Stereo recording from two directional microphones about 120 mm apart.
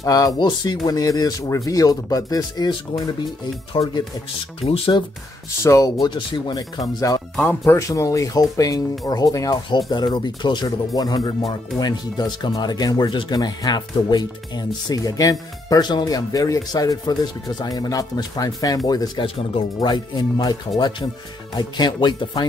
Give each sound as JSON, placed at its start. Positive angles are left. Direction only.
{"t": 0.0, "sound": "speech", "side_deg": 30}
{"t": 3.8, "sound": "speech", "side_deg": 40}
{"t": 4.6, "sound": "speech", "side_deg": 50}
{"t": 5.6, "sound": "speech", "side_deg": 25}
{"t": 6.1, "sound": "speech", "side_deg": 40}
{"t": 7.6, "sound": "speech", "side_deg": 25}